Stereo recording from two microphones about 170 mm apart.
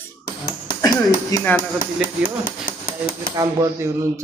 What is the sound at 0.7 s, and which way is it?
Speech, 20° left (ahead or behind).